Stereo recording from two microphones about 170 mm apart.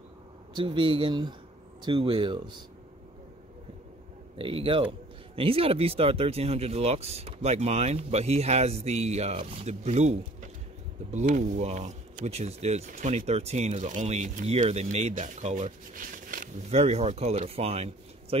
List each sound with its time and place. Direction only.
0.6 s speech: 30° right (ahead or behind)
4.4 s speech: 30° right (ahead or behind); by 16.4 s 55° right (ahead or behind)
16.6 s speech: 40° right (ahead or behind)